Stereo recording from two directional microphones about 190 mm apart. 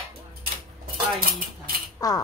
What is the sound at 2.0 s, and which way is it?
Mechanisms, 20° left (ahead or behind).